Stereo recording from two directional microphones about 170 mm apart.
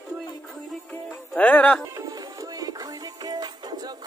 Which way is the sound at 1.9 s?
20° right (ahead or behind).